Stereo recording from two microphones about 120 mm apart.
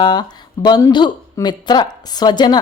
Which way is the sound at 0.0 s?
35° left (ahead or behind).